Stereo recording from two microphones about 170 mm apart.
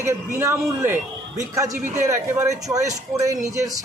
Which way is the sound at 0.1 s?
15° right (ahead or behind).